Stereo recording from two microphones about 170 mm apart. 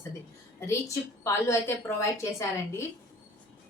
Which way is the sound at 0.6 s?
15° left (ahead or behind).